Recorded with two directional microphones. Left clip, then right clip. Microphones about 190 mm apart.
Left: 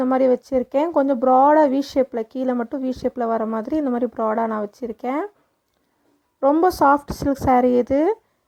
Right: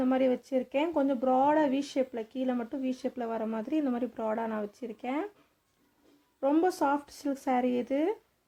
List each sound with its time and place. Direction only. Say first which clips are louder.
0.1 s speech: left 12 dB; 40° left (ahead or behind)
6.4 s speech: left 11 dB; 40° left (ahead or behind)